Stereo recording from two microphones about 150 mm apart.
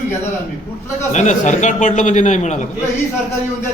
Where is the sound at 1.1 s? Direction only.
55° left (ahead or behind).